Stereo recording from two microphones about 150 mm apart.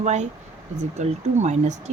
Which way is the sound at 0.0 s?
50° right (ahead or behind).